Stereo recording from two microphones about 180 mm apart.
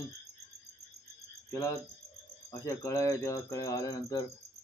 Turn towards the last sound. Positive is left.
turn(degrees=20)  # may be behind; listen again after turning